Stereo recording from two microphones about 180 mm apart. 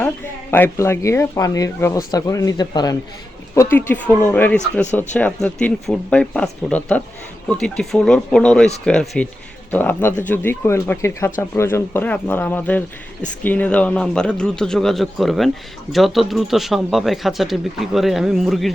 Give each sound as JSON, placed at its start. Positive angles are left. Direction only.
{"t": 0.5, "sound": "speech", "side_deg": 10}